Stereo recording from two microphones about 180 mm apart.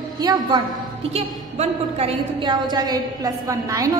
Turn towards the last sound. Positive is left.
turn(degrees=-20)  # may be behind; listen again after turning